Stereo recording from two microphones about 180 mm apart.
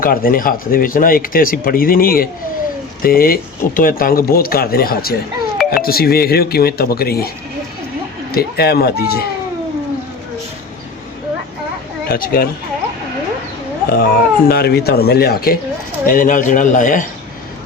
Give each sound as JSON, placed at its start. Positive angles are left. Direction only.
{"t": 0.0, "sound": "speech", "side_deg": 55}
{"t": 8.3, "sound": "speech", "side_deg": 60}
{"t": 12.0, "sound": "speech", "side_deg": 55}
{"t": 13.9, "sound": "speech", "side_deg": 55}
{"t": 16.0, "sound": "speech", "side_deg": 45}